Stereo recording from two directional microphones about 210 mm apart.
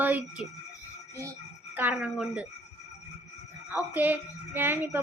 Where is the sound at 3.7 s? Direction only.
10° right (ahead or behind).